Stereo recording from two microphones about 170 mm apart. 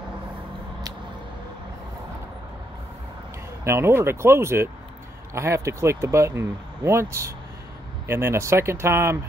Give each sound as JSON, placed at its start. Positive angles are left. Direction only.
{"t": 3.6, "sound": "speech", "side_deg": -15}